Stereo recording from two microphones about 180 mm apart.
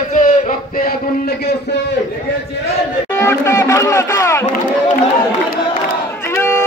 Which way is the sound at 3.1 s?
15° left (ahead or behind).